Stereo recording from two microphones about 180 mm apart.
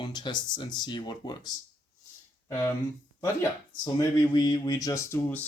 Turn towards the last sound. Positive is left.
turn(degrees=10)  # may be behind; listen again after turning